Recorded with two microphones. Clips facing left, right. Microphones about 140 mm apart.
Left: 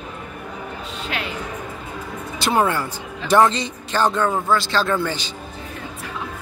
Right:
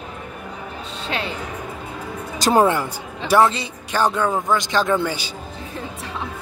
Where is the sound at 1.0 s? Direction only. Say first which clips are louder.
Right 3 dB; 30° right (ahead or behind).